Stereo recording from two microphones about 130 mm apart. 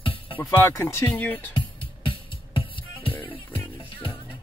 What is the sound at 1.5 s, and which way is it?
Music, 40° left (ahead or behind).